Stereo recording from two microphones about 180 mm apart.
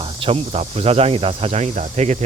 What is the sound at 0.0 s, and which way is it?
Speech, 30° right (ahead or behind).